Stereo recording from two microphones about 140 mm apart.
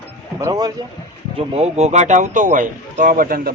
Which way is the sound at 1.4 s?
50° right (ahead or behind).